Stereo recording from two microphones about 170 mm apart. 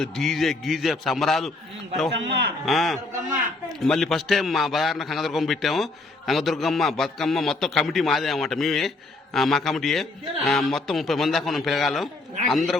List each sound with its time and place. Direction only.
0.0 s a man's voice: centre (ahead or behind)
2.1 s a man's voice: 85° right
2.6 s a man's voice: centre (ahead or behind)